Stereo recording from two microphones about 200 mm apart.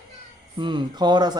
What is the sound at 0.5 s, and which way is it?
Speech, 25° right (ahead or behind).